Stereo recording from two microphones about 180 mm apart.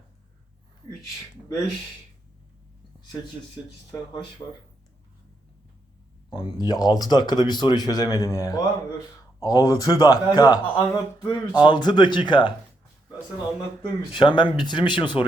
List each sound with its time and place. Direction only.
3.9 s speech: 25° left (ahead or behind)
6.3 s speech: 25° left (ahead or behind)
14.1 s speech: 25° left (ahead or behind)